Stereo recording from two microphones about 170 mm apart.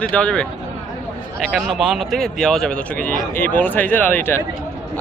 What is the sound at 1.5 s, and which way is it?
Speech, centre (ahead or behind).